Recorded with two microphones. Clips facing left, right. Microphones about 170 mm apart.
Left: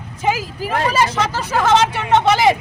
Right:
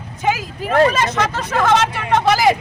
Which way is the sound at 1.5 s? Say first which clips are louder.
Left 2 dB; 30° left (ahead or behind).